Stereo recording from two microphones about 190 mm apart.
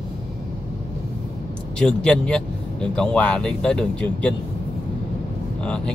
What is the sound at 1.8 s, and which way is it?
Speech, 5° left (ahead or behind).